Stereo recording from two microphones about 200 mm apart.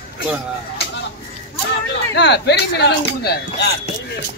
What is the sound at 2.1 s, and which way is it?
Speech, 60° left (ahead or behind).